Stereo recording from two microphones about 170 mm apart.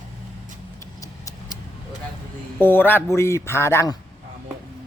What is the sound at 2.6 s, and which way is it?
A man's voice, 10° left (ahead or behind).